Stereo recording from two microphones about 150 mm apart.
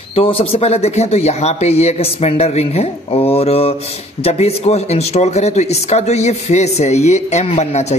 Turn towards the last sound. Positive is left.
turn(degrees=45)  # may be behind; listen again after turning